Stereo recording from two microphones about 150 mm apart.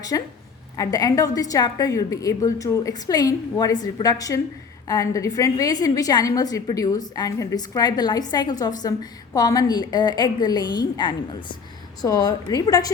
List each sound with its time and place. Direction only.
0.1 s a woman's voice: 25° left (ahead or behind)